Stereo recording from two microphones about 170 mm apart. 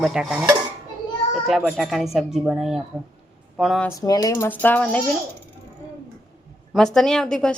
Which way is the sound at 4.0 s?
20° left (ahead or behind).